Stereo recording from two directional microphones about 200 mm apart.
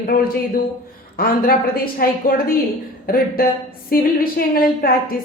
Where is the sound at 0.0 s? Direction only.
45° left (ahead or behind).